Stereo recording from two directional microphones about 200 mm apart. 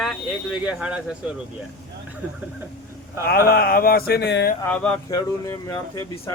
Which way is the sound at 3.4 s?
50° left (ahead or behind).